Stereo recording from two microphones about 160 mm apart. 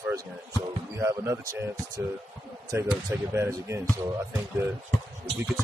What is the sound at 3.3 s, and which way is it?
Speech, 15° right (ahead or behind).